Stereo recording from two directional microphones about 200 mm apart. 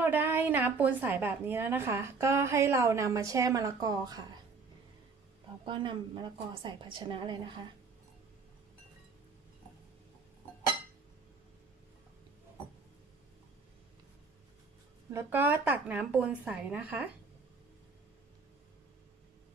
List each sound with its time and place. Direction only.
0.0 s a woman's voice: 10° right (ahead or behind)
5.7 s a woman's voice: 25° right (ahead or behind)
15.1 s a woman's voice: 10° right (ahead or behind)